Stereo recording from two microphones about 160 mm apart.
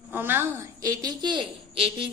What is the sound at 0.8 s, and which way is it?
A woman's voice, 25° right (ahead or behind).